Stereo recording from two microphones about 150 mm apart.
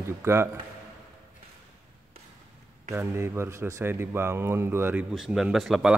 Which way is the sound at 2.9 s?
15° right (ahead or behind).